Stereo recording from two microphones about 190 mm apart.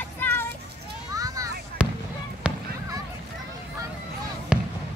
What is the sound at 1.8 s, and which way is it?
Fireworks, 5° right (ahead or behind).